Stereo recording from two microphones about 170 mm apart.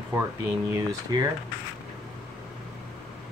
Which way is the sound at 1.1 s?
25° right (ahead or behind).